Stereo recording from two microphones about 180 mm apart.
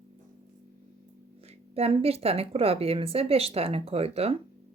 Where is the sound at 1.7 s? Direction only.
35° right (ahead or behind).